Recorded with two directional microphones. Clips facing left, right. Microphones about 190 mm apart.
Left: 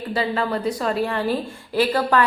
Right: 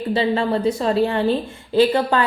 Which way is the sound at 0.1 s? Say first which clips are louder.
Right 4 dB; 25° right (ahead or behind).